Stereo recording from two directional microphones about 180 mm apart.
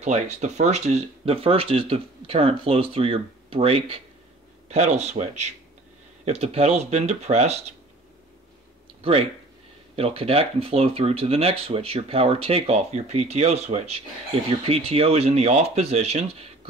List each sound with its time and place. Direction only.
0.0 s speech: 40° right (ahead or behind)
9.9 s speech: 30° right (ahead or behind)